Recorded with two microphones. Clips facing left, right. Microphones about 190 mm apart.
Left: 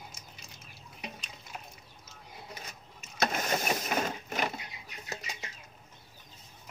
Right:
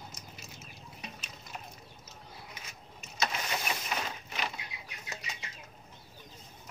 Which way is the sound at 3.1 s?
50° left (ahead or behind).